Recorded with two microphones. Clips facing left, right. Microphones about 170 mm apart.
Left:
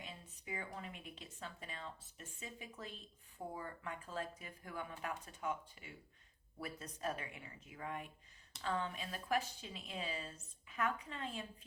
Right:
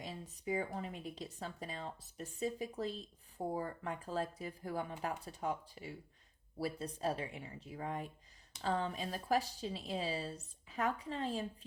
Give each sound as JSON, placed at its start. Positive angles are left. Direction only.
{"t": 0.0, "sound": "speech", "side_deg": -40}